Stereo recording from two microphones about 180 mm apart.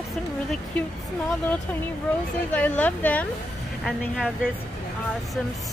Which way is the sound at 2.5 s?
10° left (ahead or behind).